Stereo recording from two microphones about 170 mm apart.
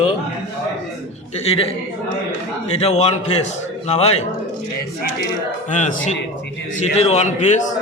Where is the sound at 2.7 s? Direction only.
40° left (ahead or behind).